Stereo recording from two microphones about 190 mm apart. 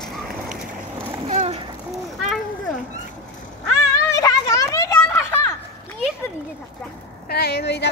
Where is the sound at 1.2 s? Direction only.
35° right (ahead or behind).